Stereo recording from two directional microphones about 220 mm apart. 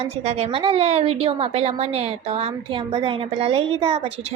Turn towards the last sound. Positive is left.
turn(degrees=-25)  # may be behind; listen again after turning